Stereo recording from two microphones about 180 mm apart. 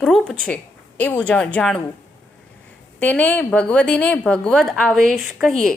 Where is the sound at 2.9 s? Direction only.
5° left (ahead or behind).